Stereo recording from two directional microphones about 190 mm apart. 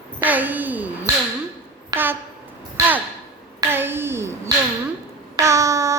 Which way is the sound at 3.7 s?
10° right (ahead or behind).